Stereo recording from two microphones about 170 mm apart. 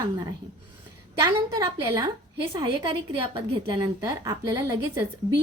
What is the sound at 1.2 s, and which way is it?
A woman's voice, 20° right (ahead or behind).